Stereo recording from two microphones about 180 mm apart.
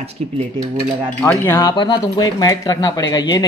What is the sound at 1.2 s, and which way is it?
Wind chime, 15° left (ahead or behind).